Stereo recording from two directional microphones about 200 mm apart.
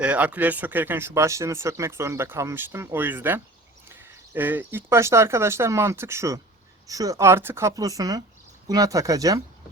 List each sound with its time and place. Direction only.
0.0 s speech: 5° right (ahead or behind)